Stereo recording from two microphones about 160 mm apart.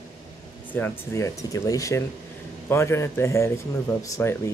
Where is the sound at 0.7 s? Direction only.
15° left (ahead or behind).